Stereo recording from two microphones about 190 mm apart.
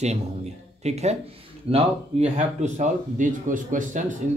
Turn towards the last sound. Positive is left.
turn(degrees=-40)  # may be behind; listen again after turning